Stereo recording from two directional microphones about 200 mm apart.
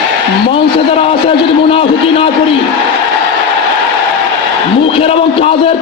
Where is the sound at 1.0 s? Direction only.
30° left (ahead or behind).